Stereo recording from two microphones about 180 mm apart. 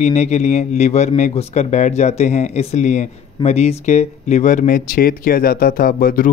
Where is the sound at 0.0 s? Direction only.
40° left (ahead or behind); by 6.3 s 55° left (ahead or behind).